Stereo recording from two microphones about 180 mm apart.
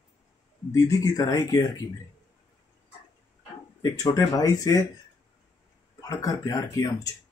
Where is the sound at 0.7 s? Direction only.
20° left (ahead or behind).